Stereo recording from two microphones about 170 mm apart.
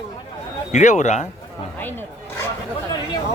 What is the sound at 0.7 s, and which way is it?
Speech, 45° left (ahead or behind).